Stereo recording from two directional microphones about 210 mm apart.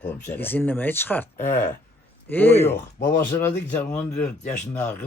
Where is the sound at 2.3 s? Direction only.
10° left (ahead or behind).